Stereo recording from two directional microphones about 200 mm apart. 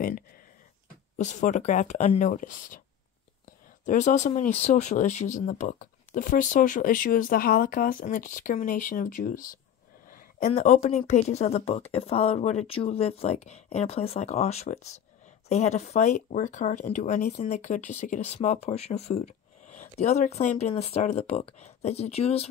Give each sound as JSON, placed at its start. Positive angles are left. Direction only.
{"t": 1.1, "sound": "speech", "side_deg": 35}
{"t": 3.8, "sound": "speech", "side_deg": 40}